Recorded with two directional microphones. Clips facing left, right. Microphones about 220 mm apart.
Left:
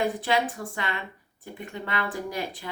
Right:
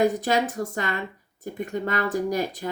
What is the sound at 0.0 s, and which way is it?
Speech, 40° right (ahead or behind).